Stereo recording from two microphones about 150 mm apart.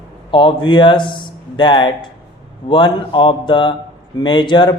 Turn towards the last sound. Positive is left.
turn(degrees=30)  # may be behind; listen again after turning